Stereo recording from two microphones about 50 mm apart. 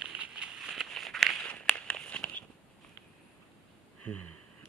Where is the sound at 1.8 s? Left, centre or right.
Left.